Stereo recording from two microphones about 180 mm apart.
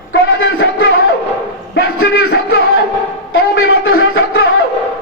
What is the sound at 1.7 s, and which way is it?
Music, 60° left (ahead or behind).